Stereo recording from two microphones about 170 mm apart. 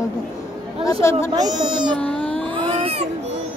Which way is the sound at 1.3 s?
25° right (ahead or behind).